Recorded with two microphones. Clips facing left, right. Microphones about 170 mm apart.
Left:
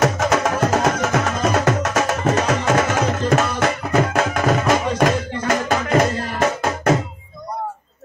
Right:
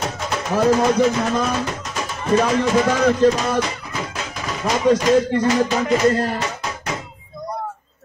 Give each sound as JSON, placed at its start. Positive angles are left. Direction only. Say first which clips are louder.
{"t": 0.0, "sound": "music", "louder": "left 8 dB", "side_deg": 80}
{"t": 3.0, "sound": "music", "louder": "right 3 dB", "side_deg": 65}